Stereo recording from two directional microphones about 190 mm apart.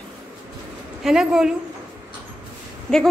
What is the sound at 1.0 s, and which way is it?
Speech, centre (ahead or behind).